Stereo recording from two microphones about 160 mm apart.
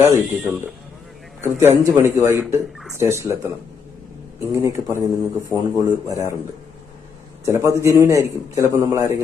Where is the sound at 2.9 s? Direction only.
15° right (ahead or behind).